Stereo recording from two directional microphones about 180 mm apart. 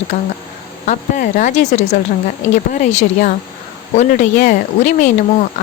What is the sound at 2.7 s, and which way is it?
Speech, 40° left (ahead or behind).